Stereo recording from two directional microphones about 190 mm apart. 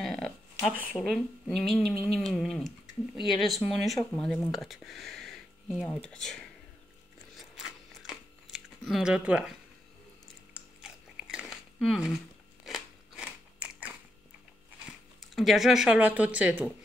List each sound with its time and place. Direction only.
0.0 s a sound: centre (ahead or behind)
0.9 s speech: centre (ahead or behind)
7.3 s a sound: centre (ahead or behind)
10.8 s biting: 5° right (ahead or behind)
12.6 s crunch: centre (ahead or behind)
15.3 s speech: centre (ahead or behind)